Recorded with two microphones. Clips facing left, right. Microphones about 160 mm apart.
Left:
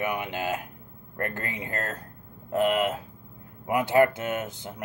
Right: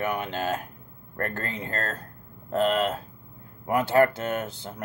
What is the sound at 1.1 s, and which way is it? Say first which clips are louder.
Speech: right 1 dB; 15° left (ahead or behind).